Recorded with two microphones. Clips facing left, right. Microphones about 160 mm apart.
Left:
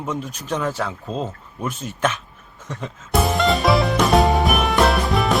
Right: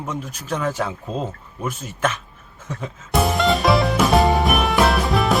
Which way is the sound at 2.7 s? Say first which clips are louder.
Left 1 dB; 5° right (ahead or behind).